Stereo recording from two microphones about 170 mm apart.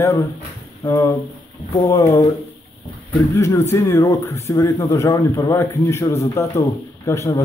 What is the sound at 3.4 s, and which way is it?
Speech, 15° left (ahead or behind).